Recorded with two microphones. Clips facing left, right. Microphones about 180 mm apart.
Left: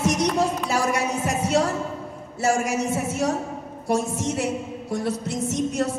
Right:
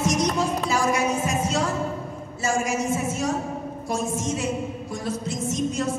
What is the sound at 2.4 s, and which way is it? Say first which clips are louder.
A woman's voice: left 2 dB; 65° left (ahead or behind).